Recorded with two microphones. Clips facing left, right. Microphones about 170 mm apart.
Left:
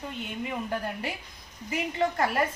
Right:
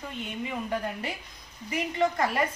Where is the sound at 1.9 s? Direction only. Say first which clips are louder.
Even; 5° left (ahead or behind).